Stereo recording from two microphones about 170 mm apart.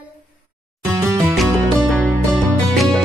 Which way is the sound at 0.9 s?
15° right (ahead or behind).